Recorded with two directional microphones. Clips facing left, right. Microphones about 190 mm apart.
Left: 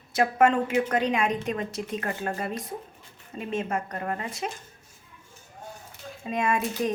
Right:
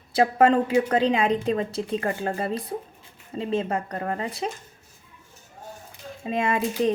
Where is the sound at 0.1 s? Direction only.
30° right (ahead or behind).